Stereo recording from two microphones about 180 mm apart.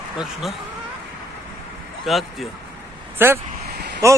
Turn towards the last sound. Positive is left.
turn(degrees=-15)  # may be behind; listen again after turning